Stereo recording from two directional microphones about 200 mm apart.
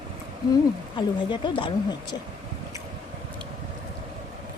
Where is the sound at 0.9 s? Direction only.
25° left (ahead or behind).